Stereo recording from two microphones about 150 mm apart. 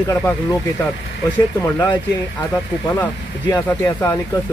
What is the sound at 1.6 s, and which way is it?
Speech, 20° left (ahead or behind).